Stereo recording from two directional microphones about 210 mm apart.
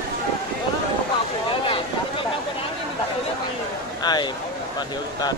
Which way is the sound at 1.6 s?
25° left (ahead or behind).